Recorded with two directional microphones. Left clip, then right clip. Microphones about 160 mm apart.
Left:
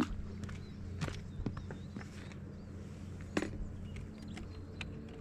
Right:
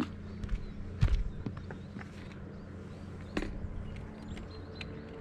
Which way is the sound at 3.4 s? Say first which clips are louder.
Left 1 dB; 5° left (ahead or behind).